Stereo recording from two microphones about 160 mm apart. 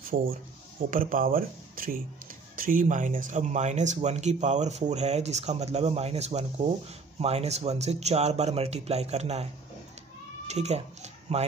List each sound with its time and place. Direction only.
0.1 s speech: 55° right (ahead or behind)